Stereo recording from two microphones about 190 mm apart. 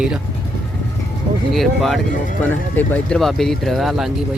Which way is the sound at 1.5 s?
Centre (ahead or behind).